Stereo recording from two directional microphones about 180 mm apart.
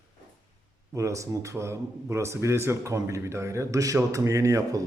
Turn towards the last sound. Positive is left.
turn(degrees=-15)  # may be behind; listen again after turning